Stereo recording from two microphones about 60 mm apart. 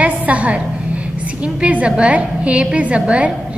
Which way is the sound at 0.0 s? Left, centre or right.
Right.